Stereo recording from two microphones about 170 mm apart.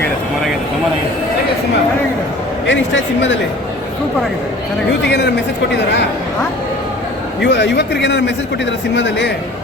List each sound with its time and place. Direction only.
2.6 s a man's voice: 90° left
5.0 s speech: 85° left
7.4 s a man's voice: 90° left